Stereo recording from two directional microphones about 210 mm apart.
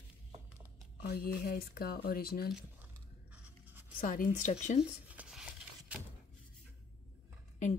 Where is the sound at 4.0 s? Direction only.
40° left (ahead or behind).